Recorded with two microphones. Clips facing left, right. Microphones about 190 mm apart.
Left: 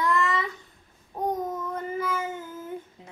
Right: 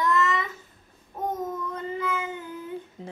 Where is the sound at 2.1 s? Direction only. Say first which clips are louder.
Left 1 dB; 20° right (ahead or behind).